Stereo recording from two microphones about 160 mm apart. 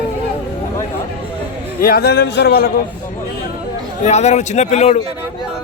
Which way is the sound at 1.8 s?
70° left (ahead or behind).